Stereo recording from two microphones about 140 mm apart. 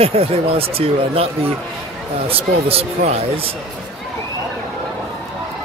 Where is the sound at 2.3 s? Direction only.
45° right (ahead or behind).